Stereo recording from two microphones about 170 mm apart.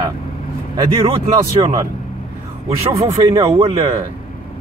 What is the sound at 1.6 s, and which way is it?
Speech, 30° right (ahead or behind).